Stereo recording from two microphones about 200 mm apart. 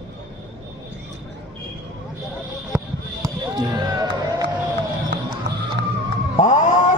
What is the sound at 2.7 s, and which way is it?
Basketball bounce, 15° right (ahead or behind).